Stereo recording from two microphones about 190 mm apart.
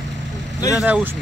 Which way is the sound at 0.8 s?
5° right (ahead or behind).